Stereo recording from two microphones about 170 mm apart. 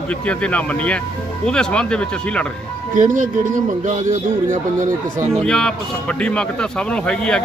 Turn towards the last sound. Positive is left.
turn(degrees=5)  # may be behind; listen again after turning